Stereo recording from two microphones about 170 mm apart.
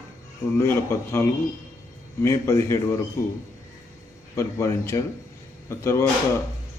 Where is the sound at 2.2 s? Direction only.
15° left (ahead or behind).